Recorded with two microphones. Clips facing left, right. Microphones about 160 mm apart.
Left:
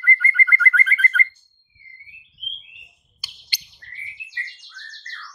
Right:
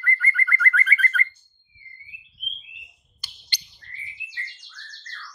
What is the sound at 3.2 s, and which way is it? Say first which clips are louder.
Bird: left 1 dB; 10° left (ahead or behind).